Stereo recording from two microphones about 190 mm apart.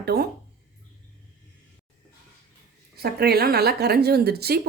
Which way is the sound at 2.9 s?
55° right (ahead or behind).